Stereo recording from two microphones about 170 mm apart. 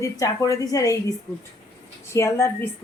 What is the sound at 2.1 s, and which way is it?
Speech, 15° left (ahead or behind).